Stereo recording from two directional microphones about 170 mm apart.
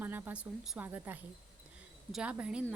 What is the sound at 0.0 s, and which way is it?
A woman's voice, 10° right (ahead or behind).